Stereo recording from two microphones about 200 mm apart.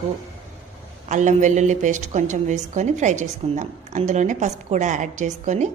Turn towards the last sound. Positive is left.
turn(degrees=-35)  # may be behind; listen again after turning